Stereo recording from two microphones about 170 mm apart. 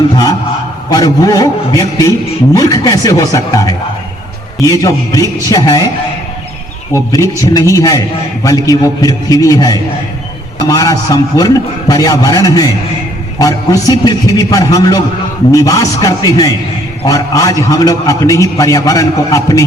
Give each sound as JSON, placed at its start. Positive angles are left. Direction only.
{"t": 0.9, "sound": "a man's voice", "side_deg": 25}
{"t": 6.9, "sound": "a man's voice", "side_deg": 20}